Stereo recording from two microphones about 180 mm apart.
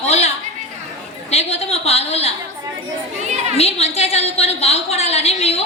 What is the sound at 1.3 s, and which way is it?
Speech, 35° left (ahead or behind).